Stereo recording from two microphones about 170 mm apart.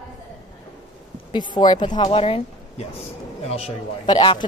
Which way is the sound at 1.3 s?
25° left (ahead or behind).